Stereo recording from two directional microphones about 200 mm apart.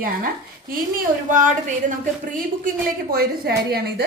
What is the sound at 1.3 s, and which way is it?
Speech, 40° right (ahead or behind).